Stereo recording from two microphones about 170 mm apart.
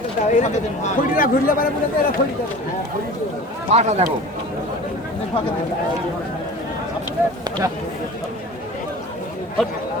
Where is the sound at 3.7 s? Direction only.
40° right (ahead or behind).